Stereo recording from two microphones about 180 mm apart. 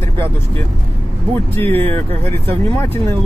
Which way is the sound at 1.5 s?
10° left (ahead or behind).